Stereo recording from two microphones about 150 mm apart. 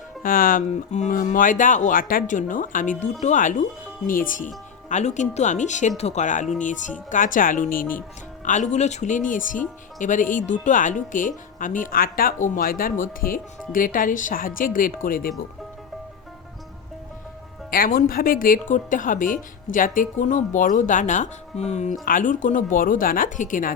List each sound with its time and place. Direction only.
0.2 s speech: 70° left (ahead or behind)
8.4 s speech: 55° left (ahead or behind); by 15.3 s 70° left (ahead or behind)
17.7 s speech: 70° left (ahead or behind); by 21.9 s 50° left (ahead or behind)
22.0 s speech: 60° left (ahead or behind)